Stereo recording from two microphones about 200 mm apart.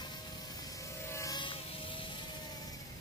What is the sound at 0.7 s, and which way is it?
Vehicle, 15° left (ahead or behind).